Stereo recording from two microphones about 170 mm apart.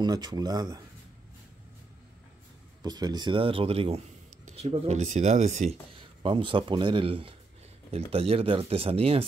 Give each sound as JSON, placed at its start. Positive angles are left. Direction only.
{"t": 0.0, "sound": "speech", "side_deg": -25}
{"t": 2.8, "sound": "speech", "side_deg": -25}
{"t": 5.9, "sound": "speech", "side_deg": -30}